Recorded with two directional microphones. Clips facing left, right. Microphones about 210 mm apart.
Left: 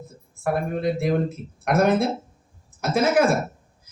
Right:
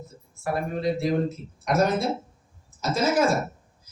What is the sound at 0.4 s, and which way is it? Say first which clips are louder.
Speech: left 2 dB; 55° left (ahead or behind).